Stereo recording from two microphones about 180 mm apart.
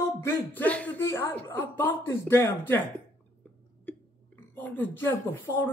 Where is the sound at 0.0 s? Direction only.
15° left (ahead or behind).